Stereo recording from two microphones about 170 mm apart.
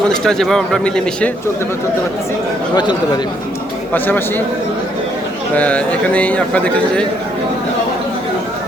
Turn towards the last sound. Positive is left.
turn(degrees=5)  # may be behind; listen again after turning